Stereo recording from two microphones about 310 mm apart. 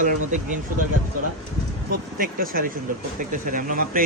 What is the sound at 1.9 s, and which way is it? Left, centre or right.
Speech, right.